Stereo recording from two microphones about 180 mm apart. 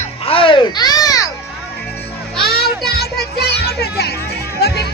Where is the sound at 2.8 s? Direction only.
60° left (ahead or behind).